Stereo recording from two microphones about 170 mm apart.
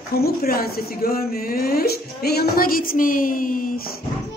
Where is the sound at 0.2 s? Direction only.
60° left (ahead or behind).